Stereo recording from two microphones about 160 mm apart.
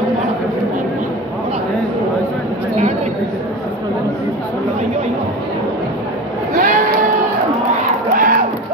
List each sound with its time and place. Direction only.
6.5 s sheep: 65° right (ahead or behind)
8.1 s music: 60° right (ahead or behind)